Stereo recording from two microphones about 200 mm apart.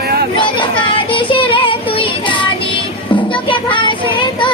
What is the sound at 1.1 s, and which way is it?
Child singing, 25° left (ahead or behind).